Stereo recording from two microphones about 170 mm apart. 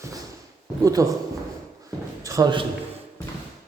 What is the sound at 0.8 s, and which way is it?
Speech, 20° right (ahead or behind).